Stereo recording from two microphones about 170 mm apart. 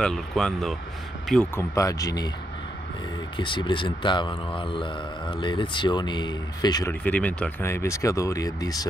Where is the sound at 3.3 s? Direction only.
30° left (ahead or behind).